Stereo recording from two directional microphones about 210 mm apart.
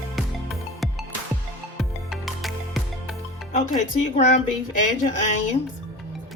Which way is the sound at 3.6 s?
35° left (ahead or behind).